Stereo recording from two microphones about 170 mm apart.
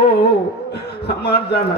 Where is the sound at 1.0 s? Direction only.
75° left (ahead or behind).